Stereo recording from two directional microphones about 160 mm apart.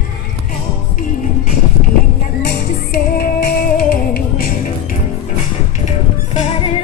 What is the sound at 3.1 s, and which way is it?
Music, 70° left (ahead or behind).